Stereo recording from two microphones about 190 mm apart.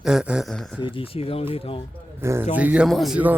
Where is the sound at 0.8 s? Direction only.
30° left (ahead or behind).